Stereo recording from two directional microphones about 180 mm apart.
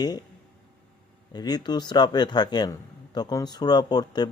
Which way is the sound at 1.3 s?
25° left (ahead or behind).